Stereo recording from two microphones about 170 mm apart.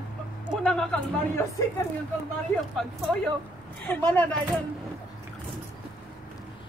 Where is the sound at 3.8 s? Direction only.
10° left (ahead or behind).